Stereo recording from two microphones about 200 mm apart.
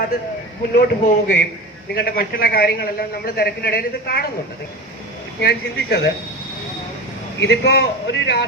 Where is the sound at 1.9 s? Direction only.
50° left (ahead or behind).